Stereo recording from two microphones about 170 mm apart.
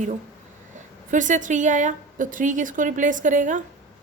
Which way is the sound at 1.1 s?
50° right (ahead or behind).